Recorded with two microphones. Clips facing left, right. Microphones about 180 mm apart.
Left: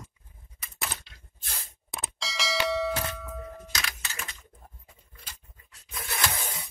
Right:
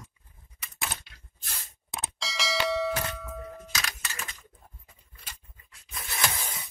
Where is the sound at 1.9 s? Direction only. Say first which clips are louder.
Even; centre (ahead or behind).